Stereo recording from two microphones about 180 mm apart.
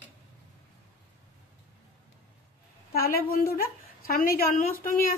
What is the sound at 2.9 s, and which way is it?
A woman's voice, 55° left (ahead or behind).